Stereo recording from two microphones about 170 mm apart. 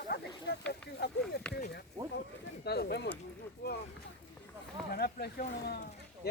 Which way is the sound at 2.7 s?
70° left (ahead or behind).